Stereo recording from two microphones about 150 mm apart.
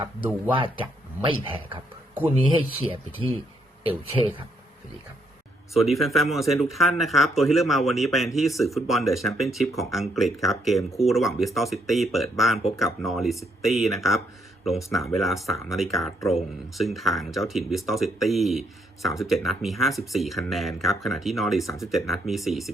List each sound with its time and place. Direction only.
1.2 s speech: 35° right (ahead or behind)
5.7 s speech: centre (ahead or behind)